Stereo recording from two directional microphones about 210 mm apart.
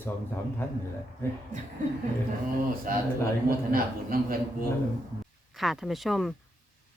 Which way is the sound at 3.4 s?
45° right (ahead or behind).